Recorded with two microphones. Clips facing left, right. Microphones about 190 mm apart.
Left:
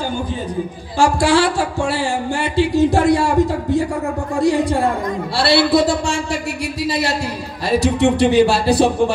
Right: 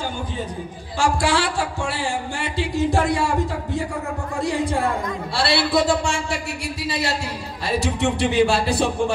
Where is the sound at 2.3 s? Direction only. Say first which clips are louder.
Left 8 dB; 65° left (ahead or behind).